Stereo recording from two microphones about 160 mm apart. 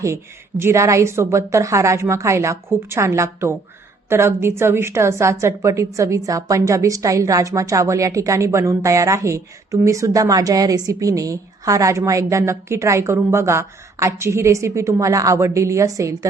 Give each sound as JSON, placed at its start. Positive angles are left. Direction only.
{"t": 0.6, "sound": "a woman's voice", "side_deg": -15}